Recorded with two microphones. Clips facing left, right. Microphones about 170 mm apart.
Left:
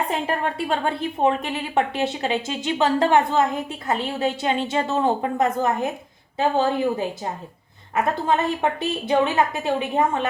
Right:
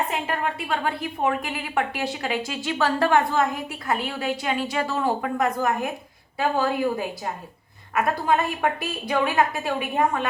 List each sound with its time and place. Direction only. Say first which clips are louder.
0.3 s a woman's voice: left 3 dB; 30° left (ahead or behind)